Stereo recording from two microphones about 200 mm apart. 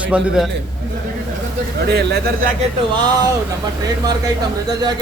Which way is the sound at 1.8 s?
55° right (ahead or behind).